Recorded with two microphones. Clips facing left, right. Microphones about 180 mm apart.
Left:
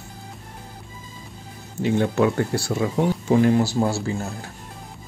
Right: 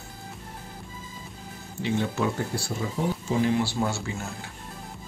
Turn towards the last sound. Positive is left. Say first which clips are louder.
# left 6 dB
turn(degrees=35)  # may be behind; listen again after turning